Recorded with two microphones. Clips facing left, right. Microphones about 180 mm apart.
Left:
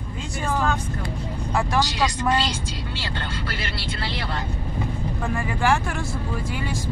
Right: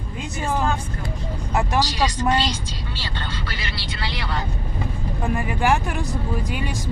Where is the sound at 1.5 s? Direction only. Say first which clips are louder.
Right 1 dB; 20° right (ahead or behind).